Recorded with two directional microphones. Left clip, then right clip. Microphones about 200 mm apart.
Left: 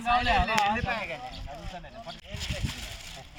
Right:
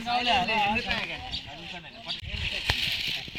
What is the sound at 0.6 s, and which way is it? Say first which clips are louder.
Speech: right 1 dB; 10° left (ahead or behind).